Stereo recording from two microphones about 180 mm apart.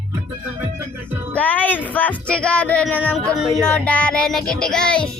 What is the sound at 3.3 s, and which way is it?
Music, centre (ahead or behind).